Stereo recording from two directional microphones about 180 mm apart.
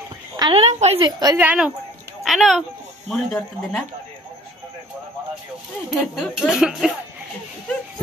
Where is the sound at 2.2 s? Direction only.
Centre (ahead or behind).